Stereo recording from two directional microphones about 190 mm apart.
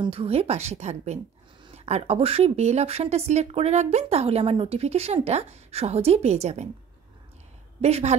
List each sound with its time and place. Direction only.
0.0 s speech: 30° right (ahead or behind)
7.8 s speech: 35° right (ahead or behind)